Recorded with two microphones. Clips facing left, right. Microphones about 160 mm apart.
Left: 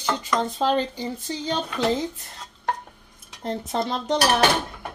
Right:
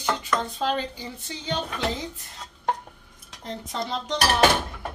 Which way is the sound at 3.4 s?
55° left (ahead or behind).